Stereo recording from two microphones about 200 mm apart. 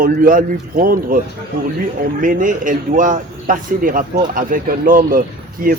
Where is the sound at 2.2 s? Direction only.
40° right (ahead or behind).